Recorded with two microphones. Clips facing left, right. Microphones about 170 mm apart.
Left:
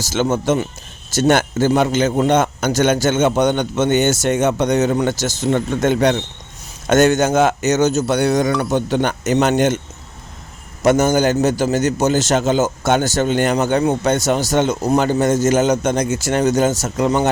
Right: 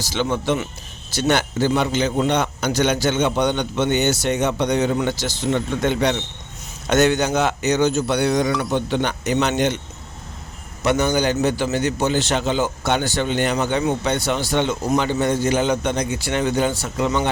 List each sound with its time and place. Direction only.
0.0 s a man's voice: 45° left (ahead or behind)
10.8 s a man's voice: 45° left (ahead or behind)